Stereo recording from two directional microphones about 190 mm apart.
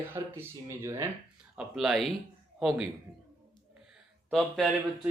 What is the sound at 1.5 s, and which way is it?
Speech, centre (ahead or behind).